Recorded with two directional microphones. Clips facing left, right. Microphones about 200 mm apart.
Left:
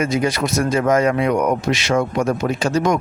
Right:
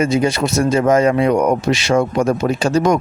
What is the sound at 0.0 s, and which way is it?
Speech, 25° right (ahead or behind).